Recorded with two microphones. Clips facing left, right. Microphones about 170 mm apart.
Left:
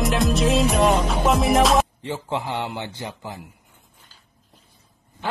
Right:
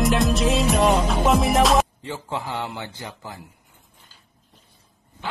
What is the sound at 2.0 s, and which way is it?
Speech, 20° left (ahead or behind).